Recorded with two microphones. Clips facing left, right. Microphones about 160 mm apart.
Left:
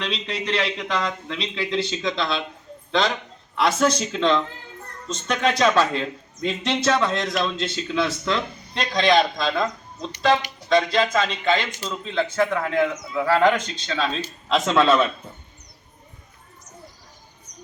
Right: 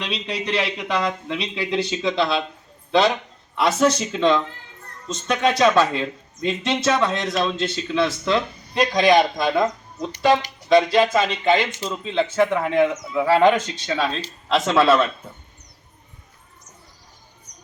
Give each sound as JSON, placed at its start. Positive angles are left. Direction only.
{"t": 0.0, "sound": "a man's voice", "side_deg": -10}
{"t": 3.6, "sound": "a man's voice", "side_deg": -10}